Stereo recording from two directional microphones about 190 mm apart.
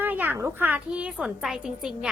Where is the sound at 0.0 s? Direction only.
10° right (ahead or behind).